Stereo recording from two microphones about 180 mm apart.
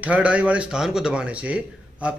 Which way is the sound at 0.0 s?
5° right (ahead or behind).